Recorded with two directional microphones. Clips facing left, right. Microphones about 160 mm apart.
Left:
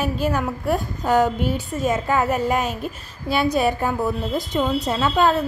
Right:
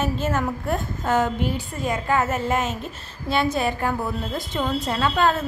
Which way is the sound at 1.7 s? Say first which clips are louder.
Left 3 dB; 20° left (ahead or behind).